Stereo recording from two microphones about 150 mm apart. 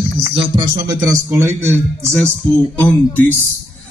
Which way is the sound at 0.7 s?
20° right (ahead or behind).